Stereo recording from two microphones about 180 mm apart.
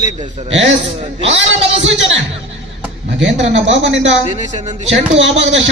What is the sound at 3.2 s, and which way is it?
Speech, 90° right.